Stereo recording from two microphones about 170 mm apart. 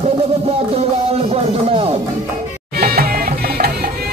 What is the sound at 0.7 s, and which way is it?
Music, 35° right (ahead or behind).